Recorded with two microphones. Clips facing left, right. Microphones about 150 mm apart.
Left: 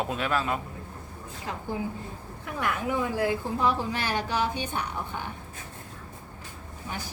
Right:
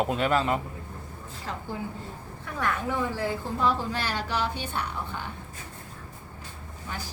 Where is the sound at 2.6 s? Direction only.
10° left (ahead or behind).